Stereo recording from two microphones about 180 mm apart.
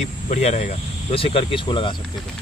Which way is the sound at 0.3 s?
35° left (ahead or behind).